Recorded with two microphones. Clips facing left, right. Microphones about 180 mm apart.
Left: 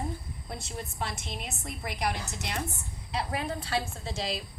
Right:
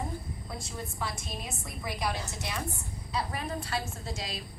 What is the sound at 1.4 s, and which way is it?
Speech, 70° left (ahead or behind).